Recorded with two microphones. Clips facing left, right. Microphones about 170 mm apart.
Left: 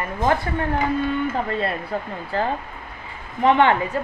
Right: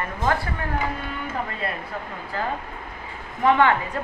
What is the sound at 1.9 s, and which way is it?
Speech, 35° left (ahead or behind).